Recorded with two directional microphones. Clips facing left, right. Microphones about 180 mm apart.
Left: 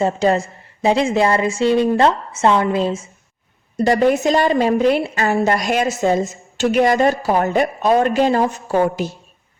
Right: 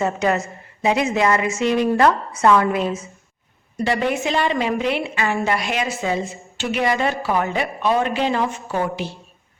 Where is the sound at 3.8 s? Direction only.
40° left (ahead or behind).